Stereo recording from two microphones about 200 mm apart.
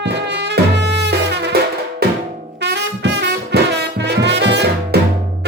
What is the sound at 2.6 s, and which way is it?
Music, 60° right (ahead or behind).